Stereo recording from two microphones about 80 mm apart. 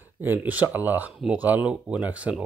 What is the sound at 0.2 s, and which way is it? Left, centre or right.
Speech, right.